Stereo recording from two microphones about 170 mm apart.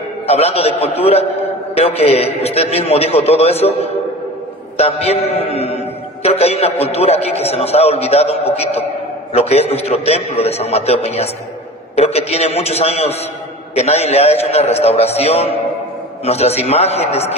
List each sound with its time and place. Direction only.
0.3 s a man's voice: 35° left (ahead or behind)